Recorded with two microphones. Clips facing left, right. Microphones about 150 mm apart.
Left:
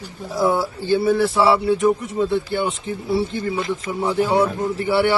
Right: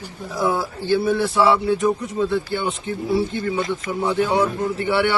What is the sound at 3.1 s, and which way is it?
A man's voice, 30° left (ahead or behind).